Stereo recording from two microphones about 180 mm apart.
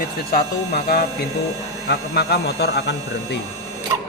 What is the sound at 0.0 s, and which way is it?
Speech, 55° left (ahead or behind).